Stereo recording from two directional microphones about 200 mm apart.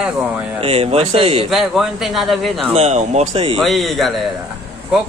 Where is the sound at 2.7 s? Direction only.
35° right (ahead or behind).